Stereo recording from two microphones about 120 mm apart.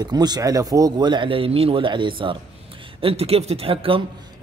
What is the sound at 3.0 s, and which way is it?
Speech, 55° right (ahead or behind).